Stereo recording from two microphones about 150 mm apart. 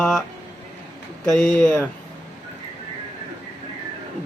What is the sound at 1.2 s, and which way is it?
Speech, centre (ahead or behind).